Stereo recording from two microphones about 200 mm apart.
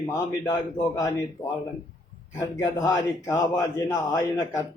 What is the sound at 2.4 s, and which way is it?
A man's voice, 20° left (ahead or behind).